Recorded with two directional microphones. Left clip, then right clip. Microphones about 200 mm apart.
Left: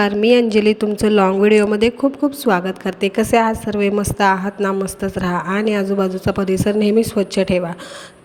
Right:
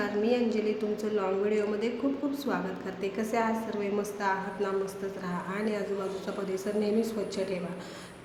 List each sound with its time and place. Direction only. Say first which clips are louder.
0.0 s a woman's voice: left 14 dB; 50° left (ahead or behind)